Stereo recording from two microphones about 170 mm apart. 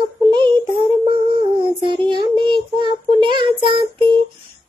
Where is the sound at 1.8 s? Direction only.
30° right (ahead or behind).